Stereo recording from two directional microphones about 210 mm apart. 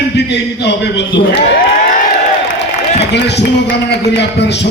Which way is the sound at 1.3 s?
55° left (ahead or behind).